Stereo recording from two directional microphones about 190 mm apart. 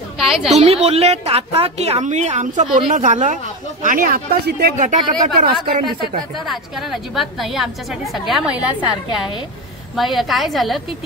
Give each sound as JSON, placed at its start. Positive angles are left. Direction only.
{"t": 0.2, "sound": "a woman's voice", "side_deg": 0}
{"t": 0.6, "sound": "speech", "side_deg": -35}
{"t": 4.7, "sound": "speech", "side_deg": -40}
{"t": 6.3, "sound": "a woman's voice", "side_deg": 0}
{"t": 9.9, "sound": "a woman's voice", "side_deg": 0}